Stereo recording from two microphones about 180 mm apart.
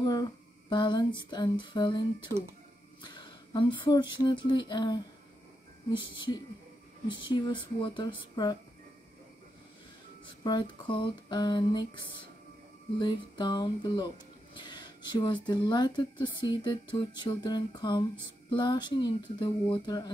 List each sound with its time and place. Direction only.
0.0 s speech: 20° left (ahead or behind)
3.0 s a sound: 25° left (ahead or behind)
4.4 s speech: 25° left (ahead or behind)
10.2 s speech: 25° left (ahead or behind)